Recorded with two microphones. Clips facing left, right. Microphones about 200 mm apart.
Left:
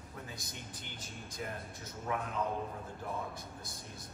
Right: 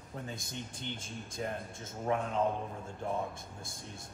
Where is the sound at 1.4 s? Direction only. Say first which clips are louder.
Right 4 dB; 35° right (ahead or behind).